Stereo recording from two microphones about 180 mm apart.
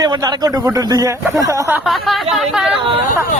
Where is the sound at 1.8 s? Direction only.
Centre (ahead or behind).